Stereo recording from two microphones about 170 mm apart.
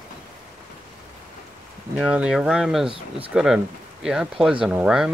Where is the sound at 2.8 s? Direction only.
30° right (ahead or behind).